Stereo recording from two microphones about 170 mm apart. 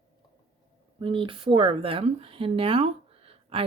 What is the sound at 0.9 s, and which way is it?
Speech, 30° right (ahead or behind).